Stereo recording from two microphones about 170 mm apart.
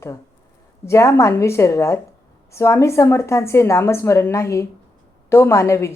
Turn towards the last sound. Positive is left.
turn(degrees=15)  # may be behind; listen again after turning